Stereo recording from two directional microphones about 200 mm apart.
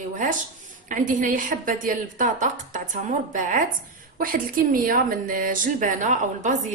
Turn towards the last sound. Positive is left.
turn(degrees=-40)  # may be behind; listen again after turning